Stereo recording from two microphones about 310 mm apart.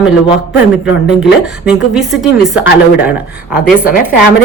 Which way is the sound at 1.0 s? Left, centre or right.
Centre.